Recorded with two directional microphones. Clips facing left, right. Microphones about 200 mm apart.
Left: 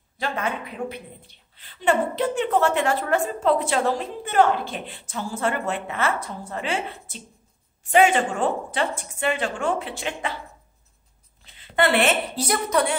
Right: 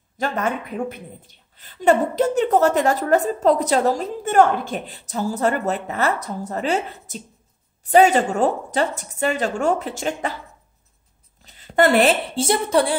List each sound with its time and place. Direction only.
0.2 s a woman's voice: 45° right (ahead or behind)
11.4 s a woman's voice: 40° right (ahead or behind)